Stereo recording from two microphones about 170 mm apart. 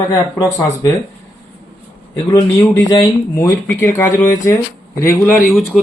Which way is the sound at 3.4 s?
15° left (ahead or behind).